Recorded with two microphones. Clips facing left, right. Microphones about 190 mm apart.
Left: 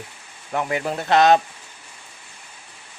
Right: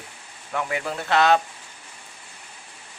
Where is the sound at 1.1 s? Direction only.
20° left (ahead or behind).